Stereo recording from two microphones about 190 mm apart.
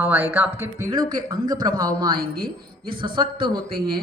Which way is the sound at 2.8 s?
25° right (ahead or behind).